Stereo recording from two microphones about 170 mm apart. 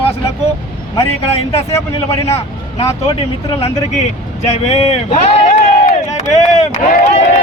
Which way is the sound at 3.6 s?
40° left (ahead or behind).